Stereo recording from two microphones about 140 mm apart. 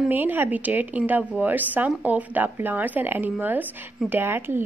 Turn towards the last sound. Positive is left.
turn(degrees=-15)  # may be behind; listen again after turning